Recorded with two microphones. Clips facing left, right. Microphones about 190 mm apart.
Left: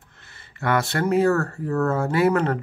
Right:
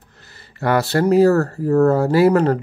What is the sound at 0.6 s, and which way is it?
Speech, 35° right (ahead or behind).